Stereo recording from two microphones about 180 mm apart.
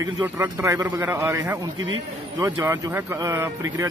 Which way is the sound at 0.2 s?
15° right (ahead or behind).